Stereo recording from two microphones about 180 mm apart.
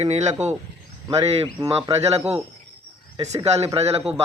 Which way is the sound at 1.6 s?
35° right (ahead or behind).